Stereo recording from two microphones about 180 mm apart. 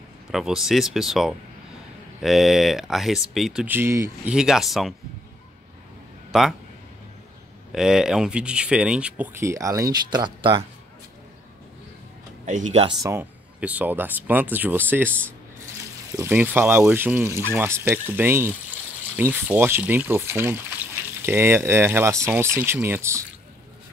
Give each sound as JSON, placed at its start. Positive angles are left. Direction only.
{"t": 0.3, "sound": "speech", "side_deg": 0}
{"t": 4.3, "sound": "speech", "side_deg": -5}
{"t": 7.7, "sound": "speech", "side_deg": -5}
{"t": 12.4, "sound": "speech", "side_deg": -40}
{"t": 12.8, "sound": "speech", "side_deg": -15}
{"t": 16.2, "sound": "speech", "side_deg": -10}